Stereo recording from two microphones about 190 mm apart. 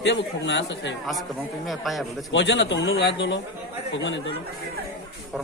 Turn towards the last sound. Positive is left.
turn(degrees=70)  # may be behind; listen again after turning